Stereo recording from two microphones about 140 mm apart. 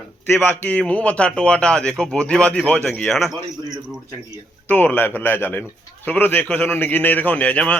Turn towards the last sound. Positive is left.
turn(degrees=10)  # may be behind; listen again after turning